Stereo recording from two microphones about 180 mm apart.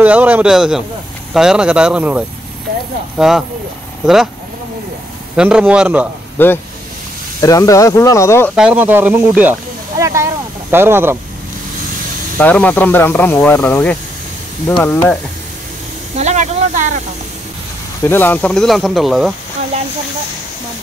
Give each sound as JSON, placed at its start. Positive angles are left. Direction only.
{"t": 0.0, "sound": "speech", "side_deg": -10}
{"t": 5.3, "sound": "speech", "side_deg": -5}
{"t": 6.3, "sound": "speech", "side_deg": 10}
{"t": 8.5, "sound": "speech", "side_deg": -10}
{"t": 12.4, "sound": "speech", "side_deg": 10}
{"t": 16.2, "sound": "speech", "side_deg": -40}
{"t": 18.0, "sound": "speech", "side_deg": 10}